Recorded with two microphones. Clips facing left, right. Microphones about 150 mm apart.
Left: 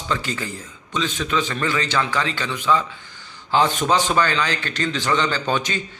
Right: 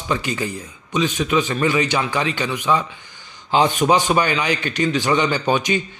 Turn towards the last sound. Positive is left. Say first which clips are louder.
# right 4 dB
turn(degrees=-15)  # may be behind; listen again after turning